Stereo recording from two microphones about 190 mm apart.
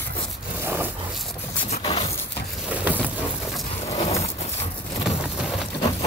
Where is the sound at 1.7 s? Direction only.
30° left (ahead or behind).